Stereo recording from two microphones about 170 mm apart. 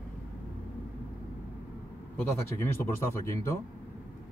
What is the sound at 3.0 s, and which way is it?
Speech, 15° left (ahead or behind).